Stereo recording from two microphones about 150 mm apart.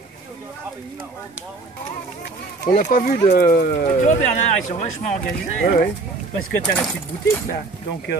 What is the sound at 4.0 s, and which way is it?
Speech, 50° left (ahead or behind).